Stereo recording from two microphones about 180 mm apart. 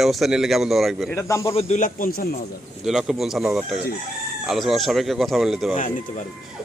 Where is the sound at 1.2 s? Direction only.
15° left (ahead or behind).